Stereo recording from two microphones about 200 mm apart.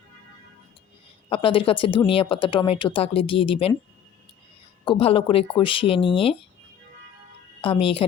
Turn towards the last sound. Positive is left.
turn(degrees=25)  # may be behind; listen again after turning